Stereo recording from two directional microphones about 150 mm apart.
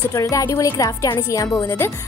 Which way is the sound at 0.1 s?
20° left (ahead or behind).